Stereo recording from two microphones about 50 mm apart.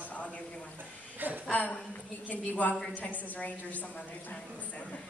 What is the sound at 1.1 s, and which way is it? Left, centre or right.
Speech, right.